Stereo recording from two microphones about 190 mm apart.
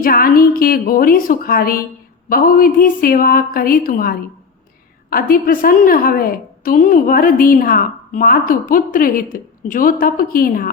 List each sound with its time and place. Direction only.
0.0 s a woman's voice: 50° left (ahead or behind)